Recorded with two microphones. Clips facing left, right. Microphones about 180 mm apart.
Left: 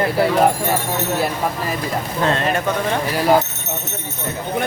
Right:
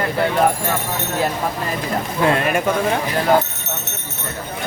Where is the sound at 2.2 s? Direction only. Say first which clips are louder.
Right 2 dB; 10° right (ahead or behind).